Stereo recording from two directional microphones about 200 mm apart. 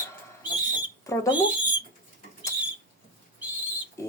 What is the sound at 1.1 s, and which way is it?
Speech, 15° left (ahead or behind).